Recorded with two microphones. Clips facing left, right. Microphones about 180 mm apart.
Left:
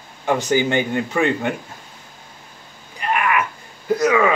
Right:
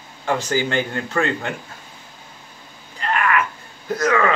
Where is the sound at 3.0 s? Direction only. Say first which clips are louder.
Left 1 dB; 15° left (ahead or behind).